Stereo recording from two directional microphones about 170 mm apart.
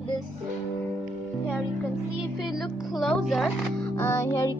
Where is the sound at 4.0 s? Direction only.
15° left (ahead or behind).